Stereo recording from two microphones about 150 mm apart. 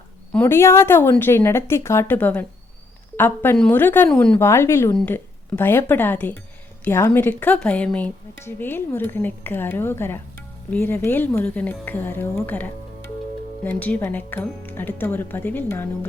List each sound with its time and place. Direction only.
0.3 s speech: 15° left (ahead or behind)